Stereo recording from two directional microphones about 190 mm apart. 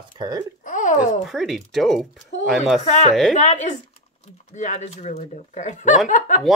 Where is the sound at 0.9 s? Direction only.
Centre (ahead or behind).